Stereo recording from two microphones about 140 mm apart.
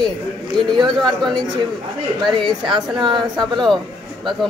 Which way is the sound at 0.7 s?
30° right (ahead or behind).